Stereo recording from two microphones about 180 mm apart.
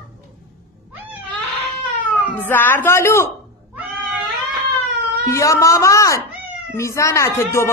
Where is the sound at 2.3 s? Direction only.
10° left (ahead or behind).